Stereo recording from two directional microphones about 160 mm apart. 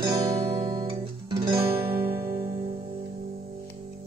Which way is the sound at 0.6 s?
30° right (ahead or behind).